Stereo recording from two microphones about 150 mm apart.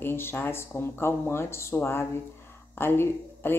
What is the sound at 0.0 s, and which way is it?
Speech, 15° left (ahead or behind).